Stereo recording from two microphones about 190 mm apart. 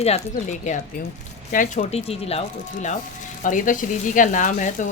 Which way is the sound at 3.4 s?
45° left (ahead or behind).